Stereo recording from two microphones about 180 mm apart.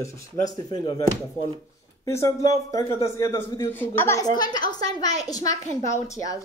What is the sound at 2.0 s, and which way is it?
A woman's voice, 15° left (ahead or behind).